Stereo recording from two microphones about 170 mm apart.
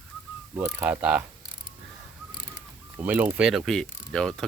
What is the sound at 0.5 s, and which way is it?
Mechanisms, 15° right (ahead or behind).